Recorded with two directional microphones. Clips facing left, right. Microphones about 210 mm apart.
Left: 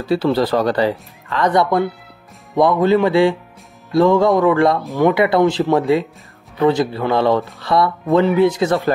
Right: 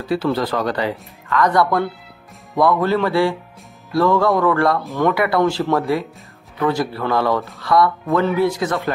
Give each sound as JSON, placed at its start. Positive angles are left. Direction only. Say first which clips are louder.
{"t": 0.1, "sound": "speech", "louder": "left 4 dB", "side_deg": 30}